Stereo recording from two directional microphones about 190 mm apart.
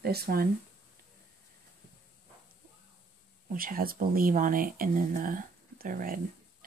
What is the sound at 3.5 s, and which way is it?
Speech, 50° right (ahead or behind).